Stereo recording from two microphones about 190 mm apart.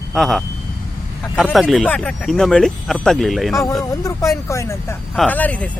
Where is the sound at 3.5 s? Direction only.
15° left (ahead or behind).